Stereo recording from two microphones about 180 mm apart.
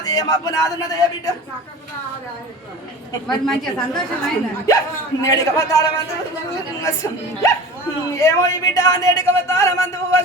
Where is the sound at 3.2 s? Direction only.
5° left (ahead or behind).